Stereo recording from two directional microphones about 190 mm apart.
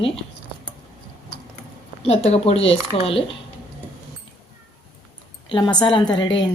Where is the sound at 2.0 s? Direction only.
30° left (ahead or behind).